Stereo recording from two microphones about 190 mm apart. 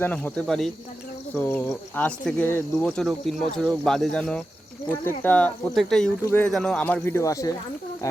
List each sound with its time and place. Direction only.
0.0 s speech: 10° left (ahead or behind)